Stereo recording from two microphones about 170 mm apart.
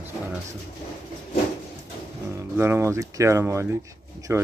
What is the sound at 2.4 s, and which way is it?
Speech, 15° right (ahead or behind).